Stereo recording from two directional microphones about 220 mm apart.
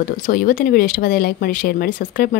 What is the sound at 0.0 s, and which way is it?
Speech, 40° left (ahead or behind).